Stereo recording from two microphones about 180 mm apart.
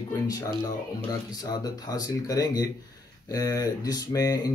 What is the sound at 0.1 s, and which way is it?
Speech, 20° left (ahead or behind).